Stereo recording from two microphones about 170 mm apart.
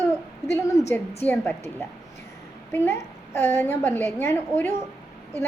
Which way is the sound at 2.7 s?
15° left (ahead or behind).